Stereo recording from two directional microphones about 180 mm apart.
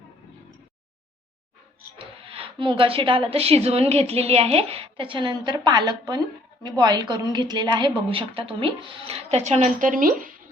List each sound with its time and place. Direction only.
2.2 s a woman's voice: 30° right (ahead or behind); by 10.5 s 50° right (ahead or behind)